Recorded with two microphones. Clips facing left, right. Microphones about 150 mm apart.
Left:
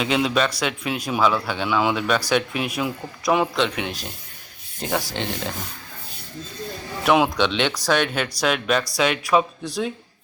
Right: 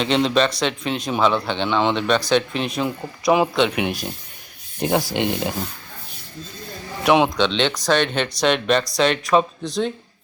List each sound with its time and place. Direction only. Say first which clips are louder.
0.0 s speech: right 3 dB; 5° left (ahead or behind)
3.8 s speech: right 5 dB; 15° right (ahead or behind)
7.0 s a man's voice: right 2 dB; centre (ahead or behind)
7.3 s speech: right 2 dB; 10° left (ahead or behind)